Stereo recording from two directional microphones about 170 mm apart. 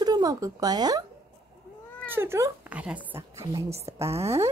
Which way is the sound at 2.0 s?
15° right (ahead or behind).